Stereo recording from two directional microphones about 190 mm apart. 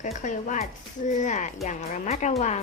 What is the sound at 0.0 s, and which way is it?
Speech, 40° left (ahead or behind).